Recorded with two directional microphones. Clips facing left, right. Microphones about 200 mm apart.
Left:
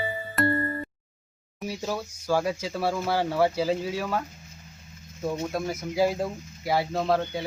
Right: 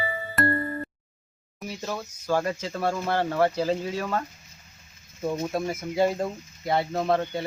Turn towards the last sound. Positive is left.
turn(degrees=0)  # may be behind; listen again after turning